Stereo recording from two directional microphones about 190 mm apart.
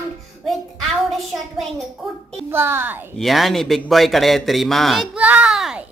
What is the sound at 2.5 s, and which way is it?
Speech, 10° right (ahead or behind).